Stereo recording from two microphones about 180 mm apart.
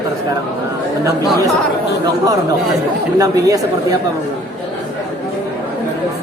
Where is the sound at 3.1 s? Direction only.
20° right (ahead or behind).